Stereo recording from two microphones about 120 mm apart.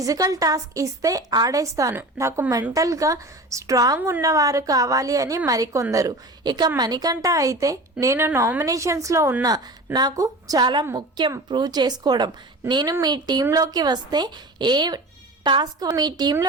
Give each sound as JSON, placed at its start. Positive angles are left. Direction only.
{"t": 0.0, "sound": "a woman's voice", "side_deg": -30}